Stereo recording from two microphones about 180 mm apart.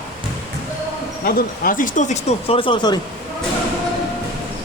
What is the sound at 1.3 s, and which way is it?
Speech, 55° left (ahead or behind).